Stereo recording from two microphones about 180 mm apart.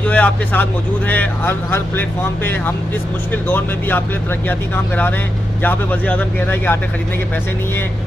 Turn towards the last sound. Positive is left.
turn(degrees=10)  # may be behind; listen again after turning